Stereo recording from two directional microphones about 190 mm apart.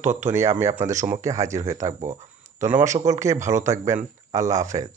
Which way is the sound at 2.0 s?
40° right (ahead or behind).